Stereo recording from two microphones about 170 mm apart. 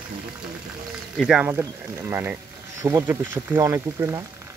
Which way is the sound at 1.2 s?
Centre (ahead or behind).